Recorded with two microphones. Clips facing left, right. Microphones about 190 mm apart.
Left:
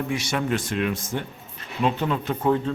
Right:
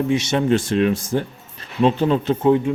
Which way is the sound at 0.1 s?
25° right (ahead or behind).